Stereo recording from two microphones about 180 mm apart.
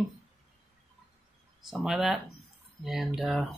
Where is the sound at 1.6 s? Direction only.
Centre (ahead or behind).